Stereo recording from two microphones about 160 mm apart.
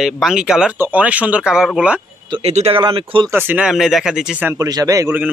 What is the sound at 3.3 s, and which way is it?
Speech, 10° right (ahead or behind).